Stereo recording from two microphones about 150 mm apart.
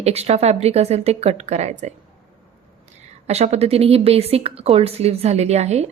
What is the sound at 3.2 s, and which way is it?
Speech, 45° right (ahead or behind).